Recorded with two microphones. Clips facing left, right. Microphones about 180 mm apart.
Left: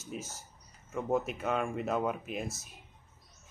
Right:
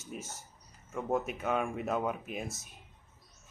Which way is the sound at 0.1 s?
Centre (ahead or behind).